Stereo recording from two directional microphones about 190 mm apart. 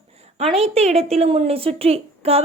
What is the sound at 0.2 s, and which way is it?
A woman's voice, 35° right (ahead or behind).